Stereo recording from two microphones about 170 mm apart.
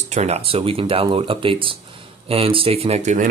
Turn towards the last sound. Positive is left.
turn(degrees=-45)  # may be behind; listen again after turning